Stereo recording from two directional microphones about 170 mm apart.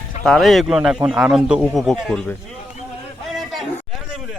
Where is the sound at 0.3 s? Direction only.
Centre (ahead or behind).